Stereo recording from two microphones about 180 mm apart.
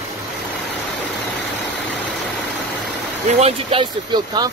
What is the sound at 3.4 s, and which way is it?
Speech, 30° right (ahead or behind).